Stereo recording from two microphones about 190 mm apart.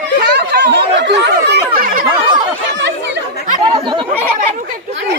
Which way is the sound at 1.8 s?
45° right (ahead or behind).